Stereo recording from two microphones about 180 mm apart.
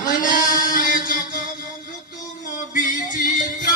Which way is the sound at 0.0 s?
50° left (ahead or behind).